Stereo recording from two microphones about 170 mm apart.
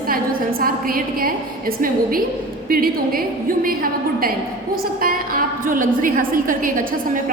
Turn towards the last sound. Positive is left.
turn(degrees=-55)  # may be behind; listen again after turning